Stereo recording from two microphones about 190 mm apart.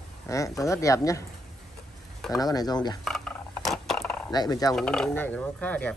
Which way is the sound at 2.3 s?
20° left (ahead or behind).